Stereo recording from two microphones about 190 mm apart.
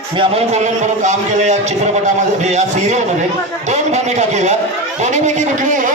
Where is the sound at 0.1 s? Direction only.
30° right (ahead or behind).